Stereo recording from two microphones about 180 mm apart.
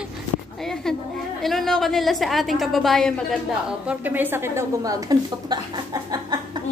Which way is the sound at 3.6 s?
10° right (ahead or behind).